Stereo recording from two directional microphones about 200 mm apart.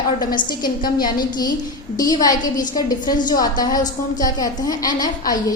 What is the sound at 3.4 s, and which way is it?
A woman's voice, 20° left (ahead or behind).